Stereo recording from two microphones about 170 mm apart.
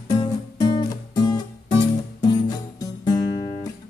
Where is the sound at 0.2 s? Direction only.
25° left (ahead or behind).